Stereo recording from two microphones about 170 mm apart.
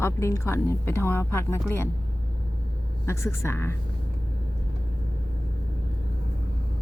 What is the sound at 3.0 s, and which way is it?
Speech, 15° left (ahead or behind).